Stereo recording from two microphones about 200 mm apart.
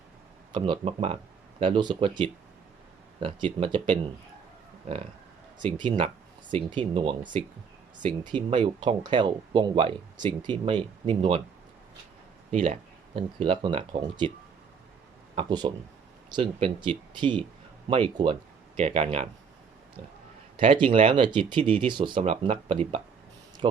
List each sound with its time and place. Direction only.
0.5 s speech: 25° right (ahead or behind)
5.5 s speech: 25° right (ahead or behind)
12.5 s speech: 40° right (ahead or behind)
13.1 s speech: 25° right (ahead or behind)
15.4 s speech: 20° right (ahead or behind)
20.6 s speech: 25° right (ahead or behind)